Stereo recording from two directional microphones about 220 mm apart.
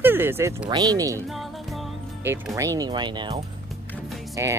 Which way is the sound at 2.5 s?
15° right (ahead or behind).